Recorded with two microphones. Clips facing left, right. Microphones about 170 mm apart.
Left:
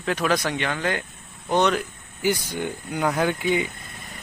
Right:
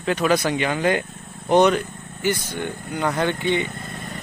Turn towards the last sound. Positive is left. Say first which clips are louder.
# right 8 dB
turn(degrees=-50)  # may be behind; listen again after turning